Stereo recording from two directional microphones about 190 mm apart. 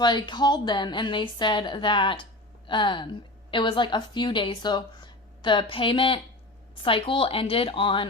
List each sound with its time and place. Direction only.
0.0 s a woman's voice: 25° left (ahead or behind)